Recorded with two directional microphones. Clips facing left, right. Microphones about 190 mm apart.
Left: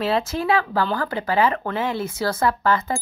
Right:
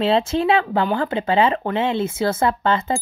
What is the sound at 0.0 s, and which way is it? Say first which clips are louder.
Speech: right 4 dB; 25° right (ahead or behind).